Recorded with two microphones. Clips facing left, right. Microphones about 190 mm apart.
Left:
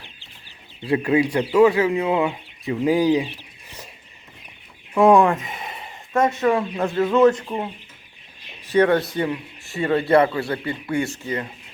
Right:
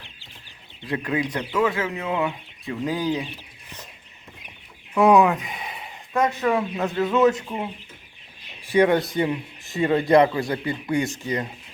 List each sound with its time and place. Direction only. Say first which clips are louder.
0.9 s speech: left 7 dB; 10° left (ahead or behind)
4.9 s speech: left 2 dB; centre (ahead or behind)
8.6 s speech: left 1 dB; 10° right (ahead or behind)